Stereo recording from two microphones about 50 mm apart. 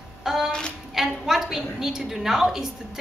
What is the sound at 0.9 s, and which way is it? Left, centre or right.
A woman's voice, centre.